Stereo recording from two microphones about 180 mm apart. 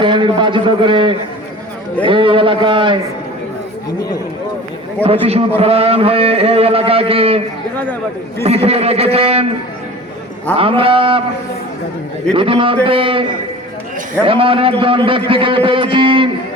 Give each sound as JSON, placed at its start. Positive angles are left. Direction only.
{"t": 0.0, "sound": "a man's voice", "side_deg": -25}
{"t": 5.2, "sound": "a man's voice", "side_deg": -35}
{"t": 8.4, "sound": "a man's voice", "side_deg": -35}
{"t": 10.6, "sound": "a man's voice", "side_deg": -30}
{"t": 12.3, "sound": "a man's voice", "side_deg": -30}
{"t": 14.3, "sound": "a man's voice", "side_deg": -30}